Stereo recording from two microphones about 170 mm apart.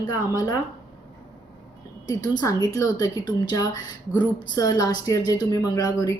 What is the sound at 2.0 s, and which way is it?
Speech, 20° left (ahead or behind).